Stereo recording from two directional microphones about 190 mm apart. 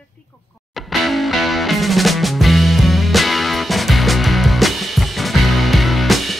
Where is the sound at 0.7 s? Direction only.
Centre (ahead or behind).